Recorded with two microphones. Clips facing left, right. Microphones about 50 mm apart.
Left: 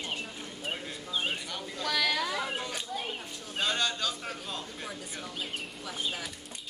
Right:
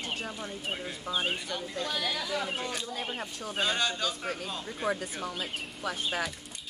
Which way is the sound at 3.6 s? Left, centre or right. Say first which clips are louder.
Right 1 dB; centre.